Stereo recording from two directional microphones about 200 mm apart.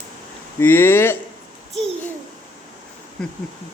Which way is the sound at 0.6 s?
10° left (ahead or behind).